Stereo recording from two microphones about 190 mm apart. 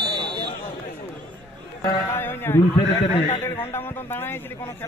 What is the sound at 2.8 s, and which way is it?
Speech, 30° left (ahead or behind).